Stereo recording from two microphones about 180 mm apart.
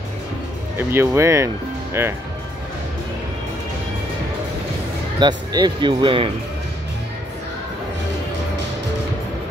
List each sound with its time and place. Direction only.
0.7 s speech: 15° right (ahead or behind)
5.2 s speech: 25° right (ahead or behind)